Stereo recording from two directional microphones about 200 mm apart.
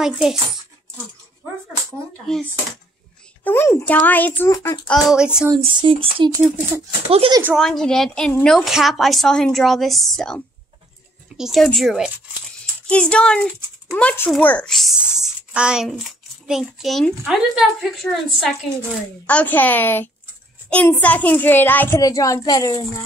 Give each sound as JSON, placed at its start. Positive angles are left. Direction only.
{"t": 0.0, "sound": "a child's voice", "side_deg": 0}
{"t": 3.4, "sound": "a child's voice", "side_deg": 10}
{"t": 5.1, "sound": "a child's voice", "side_deg": -5}
{"t": 5.6, "sound": "speech", "side_deg": -25}
{"t": 7.5, "sound": "a child's voice", "side_deg": 0}